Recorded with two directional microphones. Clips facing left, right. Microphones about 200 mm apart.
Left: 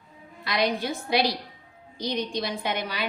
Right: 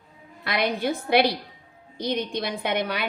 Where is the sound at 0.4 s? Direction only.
60° right (ahead or behind).